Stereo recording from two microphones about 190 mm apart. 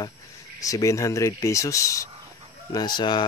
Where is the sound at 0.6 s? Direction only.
15° left (ahead or behind).